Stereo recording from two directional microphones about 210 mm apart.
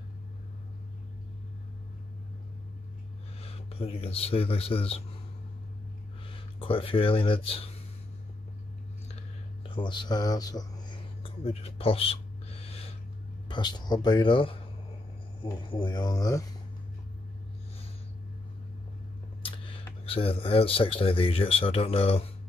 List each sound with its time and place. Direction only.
3.3 s speech: 30° left (ahead or behind)
6.2 s speech: 25° left (ahead or behind)
9.1 s a sound: 25° left (ahead or behind)
13.5 s speech: 20° left (ahead or behind)
19.4 s speech: 25° left (ahead or behind)